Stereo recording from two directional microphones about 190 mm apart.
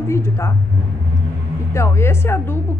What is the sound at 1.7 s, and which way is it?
Speech, 15° left (ahead or behind).